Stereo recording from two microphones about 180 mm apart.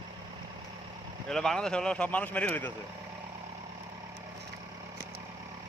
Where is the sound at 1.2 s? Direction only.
5° left (ahead or behind).